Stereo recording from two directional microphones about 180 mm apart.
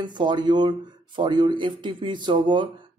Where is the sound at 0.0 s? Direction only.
25° right (ahead or behind).